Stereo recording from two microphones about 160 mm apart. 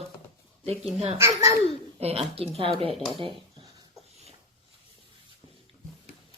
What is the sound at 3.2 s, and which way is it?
Speech, 30° right (ahead or behind).